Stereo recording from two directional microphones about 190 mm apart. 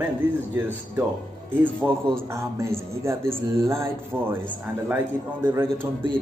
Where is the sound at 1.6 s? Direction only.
10° right (ahead or behind).